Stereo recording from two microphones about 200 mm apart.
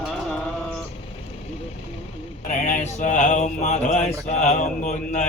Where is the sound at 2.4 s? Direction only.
40° left (ahead or behind).